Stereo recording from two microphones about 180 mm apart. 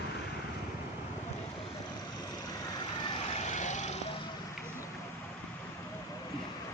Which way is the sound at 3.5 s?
40° left (ahead or behind).